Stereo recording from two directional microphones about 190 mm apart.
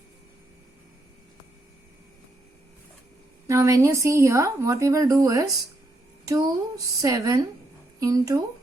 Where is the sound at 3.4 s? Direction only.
15° right (ahead or behind).